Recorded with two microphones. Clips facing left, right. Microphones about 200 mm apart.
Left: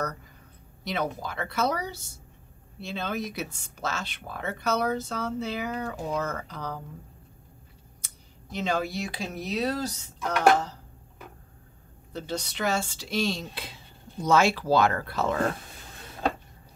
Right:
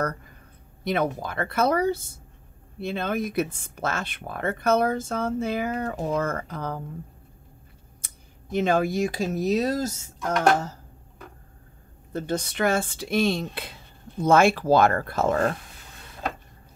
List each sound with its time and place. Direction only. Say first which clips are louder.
0.8 s speech: right 5 dB; 50° right (ahead or behind)
8.0 s speech: right 1 dB; 50° right (ahead or behind)
12.1 s speech: right 5 dB; 50° right (ahead or behind)